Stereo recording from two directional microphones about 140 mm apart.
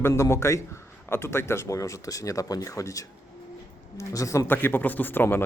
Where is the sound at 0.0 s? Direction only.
20° left (ahead or behind).